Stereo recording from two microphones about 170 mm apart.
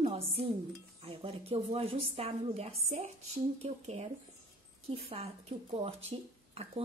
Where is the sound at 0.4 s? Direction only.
35° right (ahead or behind).